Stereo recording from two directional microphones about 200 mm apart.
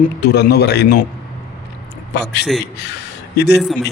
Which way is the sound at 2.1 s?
55° left (ahead or behind).